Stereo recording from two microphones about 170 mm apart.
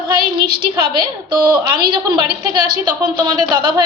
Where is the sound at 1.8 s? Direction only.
30° right (ahead or behind).